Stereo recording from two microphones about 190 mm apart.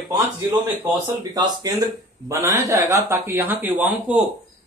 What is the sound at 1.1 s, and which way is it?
Speech, 20° right (ahead or behind).